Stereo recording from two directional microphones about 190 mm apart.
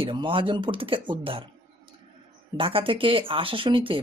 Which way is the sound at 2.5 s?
30° right (ahead or behind).